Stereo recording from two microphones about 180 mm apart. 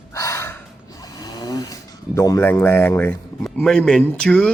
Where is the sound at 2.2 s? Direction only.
15° left (ahead or behind).